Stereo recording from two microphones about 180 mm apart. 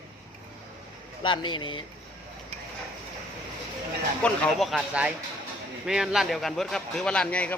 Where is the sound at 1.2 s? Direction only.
25° left (ahead or behind).